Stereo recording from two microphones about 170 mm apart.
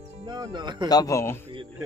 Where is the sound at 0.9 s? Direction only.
20° left (ahead or behind).